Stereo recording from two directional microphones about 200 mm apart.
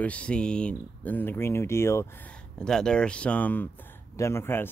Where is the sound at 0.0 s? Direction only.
5° left (ahead or behind).